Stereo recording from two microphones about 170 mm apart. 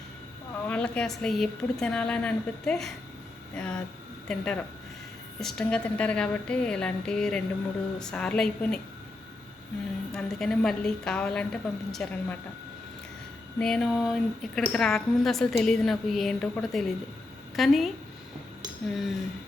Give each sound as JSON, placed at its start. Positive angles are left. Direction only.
{"t": 0.7, "sound": "a woman's voice", "side_deg": 5}
{"t": 10.1, "sound": "a woman's voice", "side_deg": 5}
{"t": 13.6, "sound": "a woman's voice", "side_deg": 5}